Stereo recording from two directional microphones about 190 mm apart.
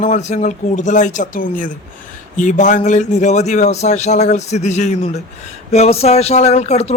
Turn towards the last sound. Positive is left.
turn(degrees=35)  # may be behind; listen again after turning